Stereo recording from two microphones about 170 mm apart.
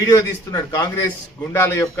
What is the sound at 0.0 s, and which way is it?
Speech, 20° left (ahead or behind).